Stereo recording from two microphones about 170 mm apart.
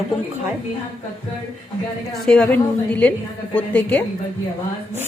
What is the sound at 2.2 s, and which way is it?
A woman's voice, 5° left (ahead or behind).